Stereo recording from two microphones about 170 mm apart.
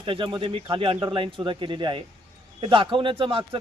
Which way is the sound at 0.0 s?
30° right (ahead or behind).